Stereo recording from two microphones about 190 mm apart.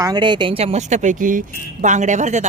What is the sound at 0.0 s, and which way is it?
Speech, 20° right (ahead or behind).